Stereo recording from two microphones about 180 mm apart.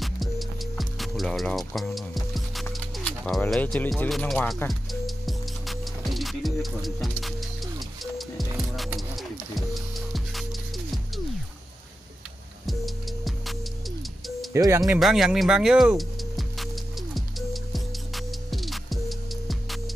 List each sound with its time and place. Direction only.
0.0 s music: centre (ahead or behind)
12.6 s music: centre (ahead or behind)
14.5 s speech: 15° right (ahead or behind)
15.0 s music: centre (ahead or behind)